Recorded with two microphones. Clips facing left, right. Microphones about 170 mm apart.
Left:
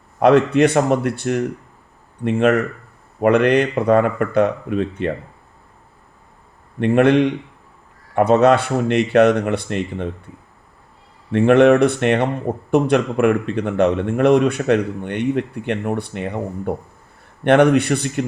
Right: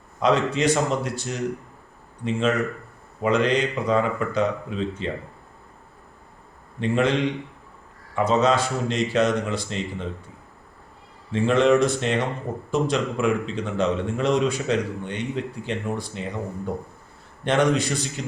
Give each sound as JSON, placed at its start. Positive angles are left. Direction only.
{"t": 0.2, "sound": "a man's voice", "side_deg": 60}
{"t": 6.7, "sound": "a man's voice", "side_deg": 60}
{"t": 11.3, "sound": "a man's voice", "side_deg": 65}